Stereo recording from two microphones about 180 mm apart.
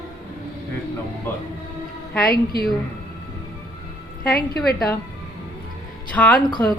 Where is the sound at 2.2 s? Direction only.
60° left (ahead or behind).